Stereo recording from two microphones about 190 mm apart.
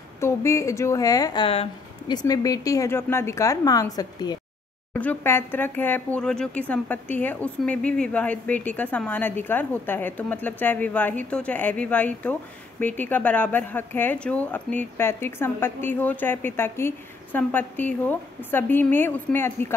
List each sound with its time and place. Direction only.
0.2 s speech: 15° left (ahead or behind)
4.9 s speech: 10° left (ahead or behind)